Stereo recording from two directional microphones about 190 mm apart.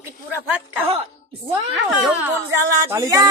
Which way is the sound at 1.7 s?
5° right (ahead or behind).